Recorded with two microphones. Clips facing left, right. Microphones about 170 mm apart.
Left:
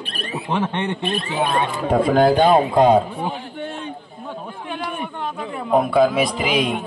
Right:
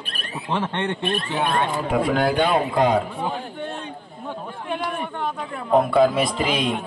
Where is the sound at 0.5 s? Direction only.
10° left (ahead or behind).